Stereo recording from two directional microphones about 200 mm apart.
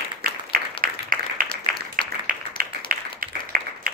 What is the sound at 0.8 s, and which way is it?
Applause, 45° right (ahead or behind).